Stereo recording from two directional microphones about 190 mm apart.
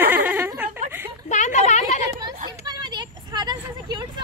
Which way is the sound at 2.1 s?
20° right (ahead or behind).